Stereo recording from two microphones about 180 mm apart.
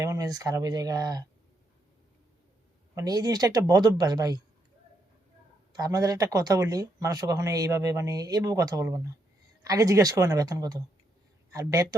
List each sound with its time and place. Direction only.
0.0 s speech: 20° right (ahead or behind)
2.9 s speech: 20° right (ahead or behind)
5.7 s speech: 20° right (ahead or behind)